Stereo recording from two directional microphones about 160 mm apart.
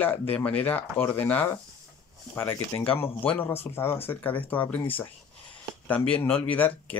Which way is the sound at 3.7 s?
15° left (ahead or behind).